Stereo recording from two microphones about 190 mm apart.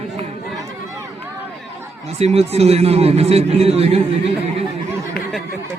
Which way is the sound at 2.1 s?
35° right (ahead or behind).